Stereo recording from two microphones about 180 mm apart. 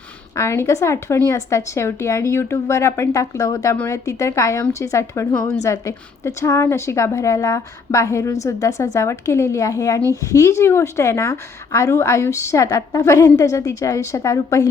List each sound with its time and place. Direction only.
0.3 s a woman's voice: 15° left (ahead or behind)